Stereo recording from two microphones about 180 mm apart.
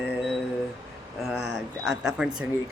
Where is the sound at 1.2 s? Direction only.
Centre (ahead or behind).